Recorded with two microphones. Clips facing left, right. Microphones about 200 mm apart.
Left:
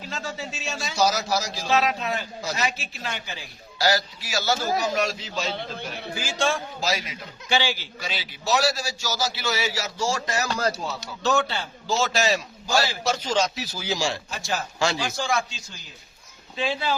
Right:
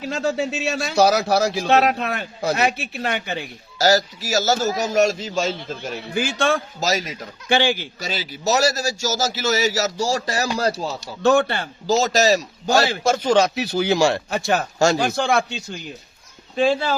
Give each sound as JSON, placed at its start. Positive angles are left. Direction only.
{"t": 0.1, "sound": "speech", "side_deg": -45}
{"t": 0.5, "sound": "a man's voice", "side_deg": -65}
{"t": 3.8, "sound": "a man's voice", "side_deg": -45}
{"t": 6.1, "sound": "a man's voice", "side_deg": -60}
{"t": 6.7, "sound": "a man's voice", "side_deg": -45}
{"t": 11.2, "sound": "a man's voice", "side_deg": -55}
{"t": 11.9, "sound": "a man's voice", "side_deg": -40}
{"t": 16.6, "sound": "a man's voice", "side_deg": -50}